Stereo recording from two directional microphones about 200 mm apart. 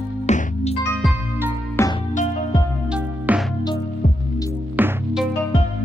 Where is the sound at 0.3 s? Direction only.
35° left (ahead or behind).